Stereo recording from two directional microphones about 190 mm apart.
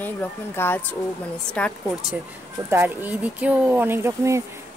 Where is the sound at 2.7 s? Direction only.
10° right (ahead or behind).